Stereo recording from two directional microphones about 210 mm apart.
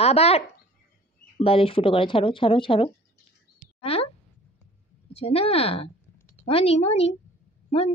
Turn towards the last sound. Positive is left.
turn(degrees=30)  # may be behind; listen again after turning